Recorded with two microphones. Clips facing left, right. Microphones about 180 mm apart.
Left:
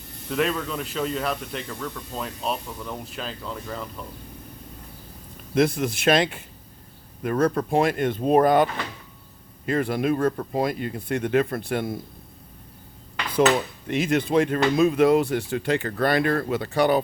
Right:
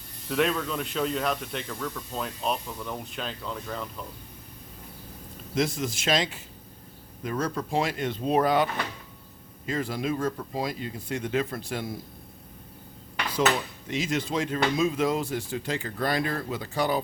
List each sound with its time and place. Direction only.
0.3 s speech: centre (ahead or behind)
5.5 s speech: 60° left (ahead or behind)
13.8 s speech: 60° left (ahead or behind)